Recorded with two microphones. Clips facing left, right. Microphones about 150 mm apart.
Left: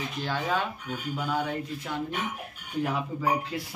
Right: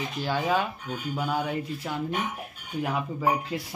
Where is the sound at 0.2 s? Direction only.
5° right (ahead or behind).